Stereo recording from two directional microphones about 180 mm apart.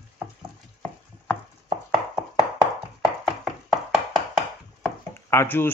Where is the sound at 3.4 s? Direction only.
5° right (ahead or behind).